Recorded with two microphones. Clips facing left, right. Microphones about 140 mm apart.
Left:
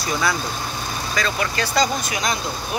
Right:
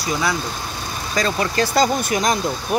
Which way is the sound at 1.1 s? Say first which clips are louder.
Right 4 dB; 40° right (ahead or behind).